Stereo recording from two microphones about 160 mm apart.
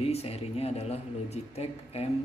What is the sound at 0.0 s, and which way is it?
A man's voice, 40° left (ahead or behind).